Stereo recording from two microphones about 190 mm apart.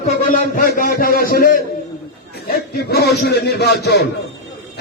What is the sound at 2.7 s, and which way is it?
Speech, 60° left (ahead or behind).